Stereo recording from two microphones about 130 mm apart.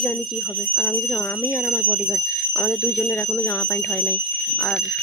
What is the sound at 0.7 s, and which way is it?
Speech, 20° left (ahead or behind).